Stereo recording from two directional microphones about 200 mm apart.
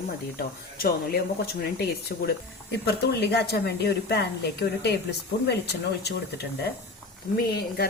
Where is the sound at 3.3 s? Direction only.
55° left (ahead or behind).